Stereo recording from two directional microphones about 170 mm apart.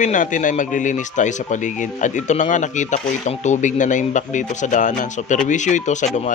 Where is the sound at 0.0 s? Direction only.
50° left (ahead or behind).